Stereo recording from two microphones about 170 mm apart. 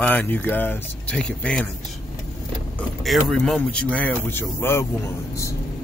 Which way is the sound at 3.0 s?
Centre (ahead or behind).